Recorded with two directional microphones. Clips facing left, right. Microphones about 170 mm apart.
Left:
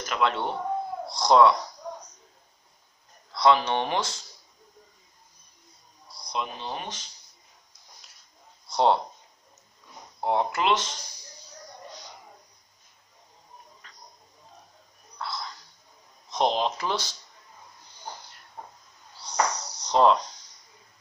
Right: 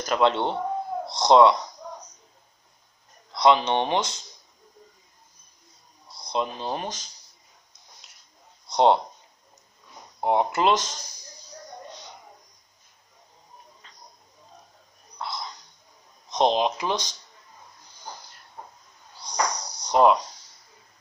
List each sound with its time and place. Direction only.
0.0 s speech: 30° right (ahead or behind)
3.3 s speech: 20° right (ahead or behind)
6.0 s a sound: 25° right (ahead or behind)
6.6 s speech: 40° right (ahead or behind)
8.6 s speech: 20° right (ahead or behind)
10.2 s speech: 15° right (ahead or behind)
10.6 s speech: 40° right (ahead or behind)
13.8 s a sound: 25° right (ahead or behind)
15.1 s a sound: 20° right (ahead or behind)
16.3 s speech: 20° right (ahead or behind)
19.1 s cricket: 15° right (ahead or behind)